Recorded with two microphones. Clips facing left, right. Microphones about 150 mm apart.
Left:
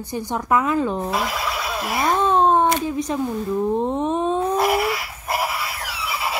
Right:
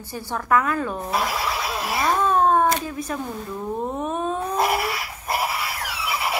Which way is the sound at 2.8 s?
20° left (ahead or behind).